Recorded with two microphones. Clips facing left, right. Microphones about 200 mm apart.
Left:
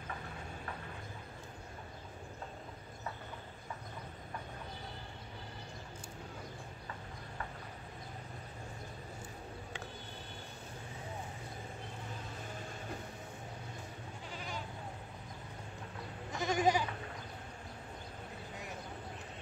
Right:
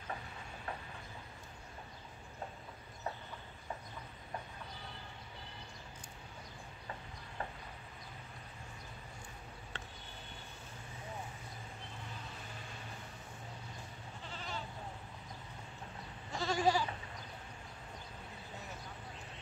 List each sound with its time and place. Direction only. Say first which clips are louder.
14.3 s goat: left 1 dB; 10° left (ahead or behind)
16.3 s goat: left 1 dB; 20° left (ahead or behind)